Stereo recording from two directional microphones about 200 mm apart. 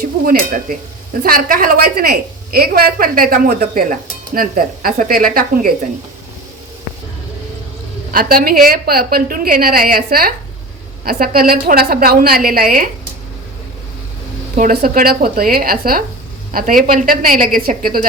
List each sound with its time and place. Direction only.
0.0 s a woman's voice: 45° right (ahead or behind)
8.1 s a woman's voice: 45° right (ahead or behind)
14.5 s a woman's voice: 45° right (ahead or behind)